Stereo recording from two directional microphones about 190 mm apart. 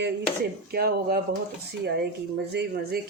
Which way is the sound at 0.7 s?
55° right (ahead or behind).